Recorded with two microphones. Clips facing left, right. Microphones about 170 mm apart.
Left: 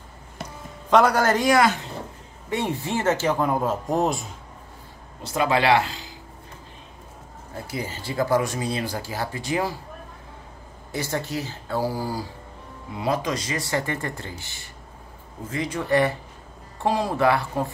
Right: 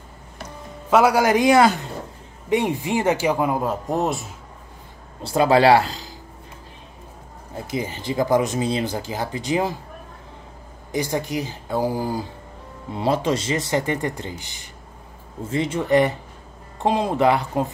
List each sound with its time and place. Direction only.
0.8 s speech: 5° right (ahead or behind)
5.2 s speech: 30° right (ahead or behind)
7.5 s speech: 20° right (ahead or behind)
10.9 s speech: 15° right (ahead or behind)
12.9 s speech: 30° right (ahead or behind)